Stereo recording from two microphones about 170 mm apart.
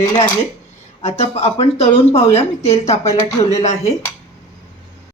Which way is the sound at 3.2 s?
20° left (ahead or behind).